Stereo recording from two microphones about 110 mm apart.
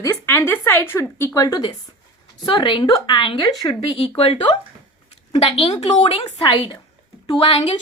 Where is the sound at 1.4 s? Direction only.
35° left (ahead or behind).